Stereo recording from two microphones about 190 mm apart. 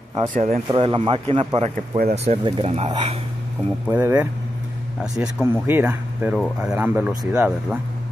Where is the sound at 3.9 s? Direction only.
10° right (ahead or behind).